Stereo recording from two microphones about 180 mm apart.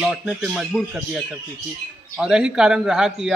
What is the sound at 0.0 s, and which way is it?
Speech, 5° right (ahead or behind).